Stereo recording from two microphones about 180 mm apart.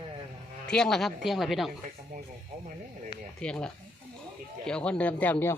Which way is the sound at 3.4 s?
5° left (ahead or behind).